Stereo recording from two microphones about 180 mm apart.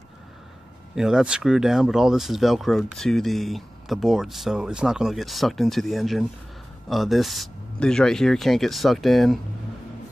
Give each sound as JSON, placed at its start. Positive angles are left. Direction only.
{"t": 0.9, "sound": "speech", "side_deg": -5}